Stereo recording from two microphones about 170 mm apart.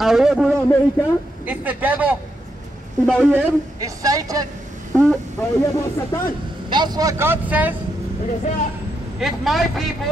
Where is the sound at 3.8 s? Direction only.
20° right (ahead or behind).